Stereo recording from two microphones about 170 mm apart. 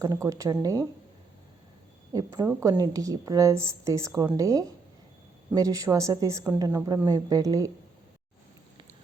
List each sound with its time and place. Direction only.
0.0 s a woman's voice: 20° right (ahead or behind)
2.1 s a woman's voice: 25° right (ahead or behind)